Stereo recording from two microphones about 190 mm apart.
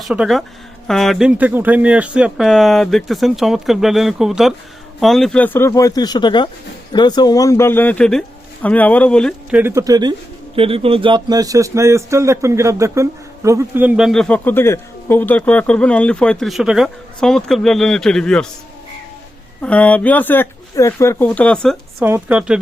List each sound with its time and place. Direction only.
0.1 s speech: centre (ahead or behind)
9.5 s speech: 10° right (ahead or behind)
19.6 s speech: 5° left (ahead or behind)
22.0 s speech: 10° right (ahead or behind)